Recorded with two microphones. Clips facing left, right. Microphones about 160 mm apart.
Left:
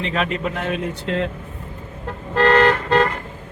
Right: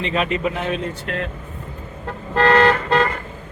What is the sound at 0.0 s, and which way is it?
Speech, centre (ahead or behind).